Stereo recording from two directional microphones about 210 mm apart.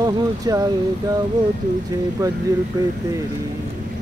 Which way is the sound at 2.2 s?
15° right (ahead or behind).